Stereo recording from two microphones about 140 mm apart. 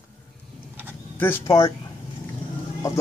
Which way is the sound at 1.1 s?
15° left (ahead or behind).